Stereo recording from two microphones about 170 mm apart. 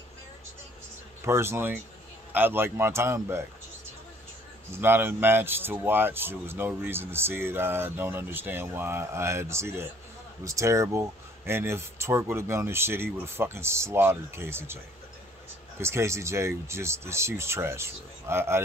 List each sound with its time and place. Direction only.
1.2 s speech: 15° right (ahead or behind)
4.7 s speech: 15° right (ahead or behind)
15.8 s speech: 15° right (ahead or behind)